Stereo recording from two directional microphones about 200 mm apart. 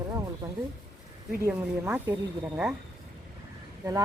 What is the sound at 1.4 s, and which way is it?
Speech, 10° right (ahead or behind).